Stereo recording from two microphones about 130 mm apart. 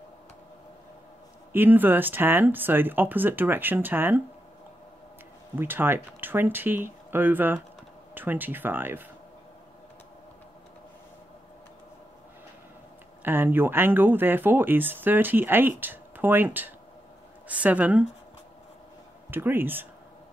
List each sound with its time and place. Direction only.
1.5 s speech: 15° right (ahead or behind)
5.6 s speech: 15° right (ahead or behind)
13.2 s speech: 15° right (ahead or behind)
19.3 s speech: 15° right (ahead or behind)